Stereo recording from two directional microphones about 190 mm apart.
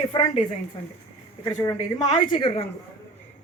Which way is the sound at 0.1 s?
25° left (ahead or behind).